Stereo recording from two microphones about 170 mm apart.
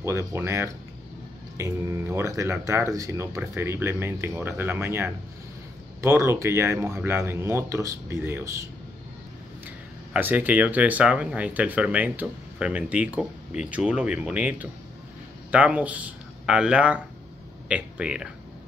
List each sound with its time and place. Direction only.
0.0 s speech: 15° right (ahead or behind)
10.1 s speech: 10° right (ahead or behind)